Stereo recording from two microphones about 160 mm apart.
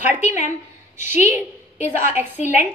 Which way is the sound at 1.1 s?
15° right (ahead or behind).